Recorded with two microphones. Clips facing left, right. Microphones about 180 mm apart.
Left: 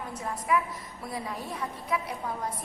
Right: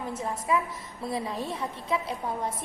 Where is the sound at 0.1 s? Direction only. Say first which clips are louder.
Even; 25° right (ahead or behind).